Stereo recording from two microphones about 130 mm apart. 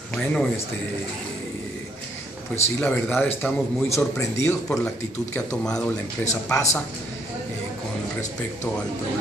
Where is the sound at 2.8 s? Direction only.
15° left (ahead or behind).